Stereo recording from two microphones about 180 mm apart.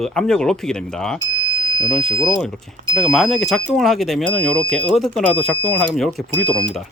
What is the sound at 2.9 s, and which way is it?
Speech, centre (ahead or behind).